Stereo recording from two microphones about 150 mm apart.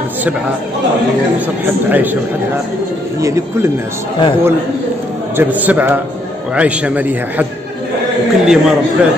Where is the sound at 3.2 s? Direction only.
20° right (ahead or behind).